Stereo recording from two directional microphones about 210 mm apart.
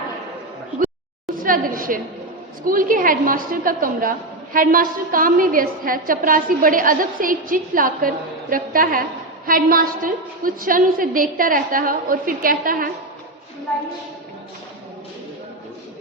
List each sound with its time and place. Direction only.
1.4 s a woman's voice: 40° right (ahead or behind)